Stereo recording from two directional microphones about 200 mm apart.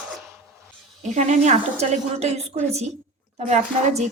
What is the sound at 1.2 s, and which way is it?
A woman's voice, 35° right (ahead or behind).